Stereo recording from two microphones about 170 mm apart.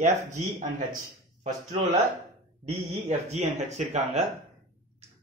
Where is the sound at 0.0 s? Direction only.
45° right (ahead or behind).